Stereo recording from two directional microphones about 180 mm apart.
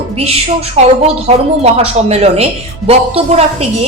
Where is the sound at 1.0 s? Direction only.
35° right (ahead or behind).